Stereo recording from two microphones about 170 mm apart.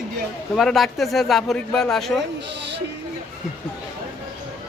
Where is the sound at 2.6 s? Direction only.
90° right.